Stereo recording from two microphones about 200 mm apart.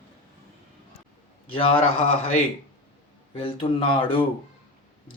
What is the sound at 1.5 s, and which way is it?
Speech, 25° left (ahead or behind).